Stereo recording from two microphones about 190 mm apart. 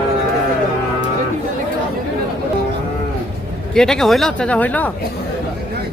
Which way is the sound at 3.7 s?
5° left (ahead or behind).